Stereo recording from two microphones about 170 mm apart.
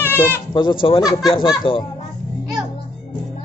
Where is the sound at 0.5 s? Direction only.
30° left (ahead or behind).